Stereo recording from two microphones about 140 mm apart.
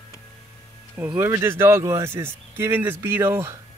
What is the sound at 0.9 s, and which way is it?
Speech, 15° right (ahead or behind).